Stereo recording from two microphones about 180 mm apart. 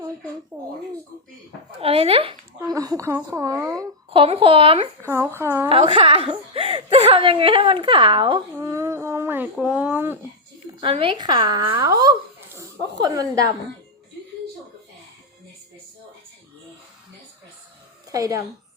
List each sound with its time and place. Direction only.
0.5 s a woman's voice: 10° right (ahead or behind)
1.8 s speech: 30° right (ahead or behind)
2.7 s a woman's voice: 20° right (ahead or behind)
4.2 s speech: 30° right (ahead or behind)
5.0 s a woman's voice: 15° right (ahead or behind)
5.6 s a woman's voice: 30° right (ahead or behind)
8.5 s a woman's voice: 15° right (ahead or behind)
10.8 s a woman's voice: 30° right (ahead or behind)
18.1 s a woman's voice: 20° right (ahead or behind)